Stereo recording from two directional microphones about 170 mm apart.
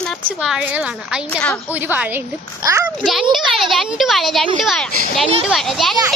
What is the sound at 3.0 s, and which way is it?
A woman's voice, centre (ahead or behind).